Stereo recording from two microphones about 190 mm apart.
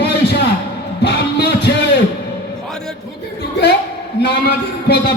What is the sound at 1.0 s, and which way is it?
Music, 60° left (ahead or behind).